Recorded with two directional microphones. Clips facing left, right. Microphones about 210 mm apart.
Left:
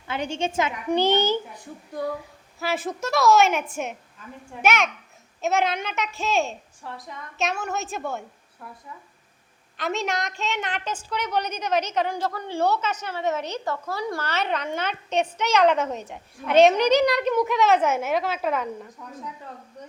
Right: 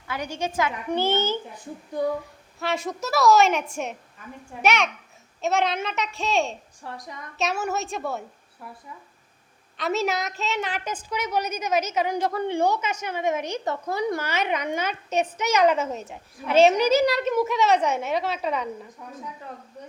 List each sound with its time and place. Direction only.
0.1 s a woman's voice: 25° left (ahead or behind)
2.6 s a woman's voice: 5° left (ahead or behind)
9.7 s a woman's voice: centre (ahead or behind)